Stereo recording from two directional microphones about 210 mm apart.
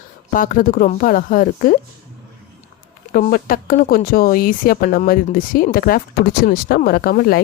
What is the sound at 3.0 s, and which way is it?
Speech, 40° left (ahead or behind).